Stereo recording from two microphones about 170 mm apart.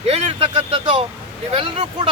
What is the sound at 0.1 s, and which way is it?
Vehicle, 35° right (ahead or behind).